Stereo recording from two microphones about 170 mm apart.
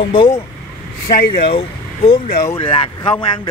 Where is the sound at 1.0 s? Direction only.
60° left (ahead or behind).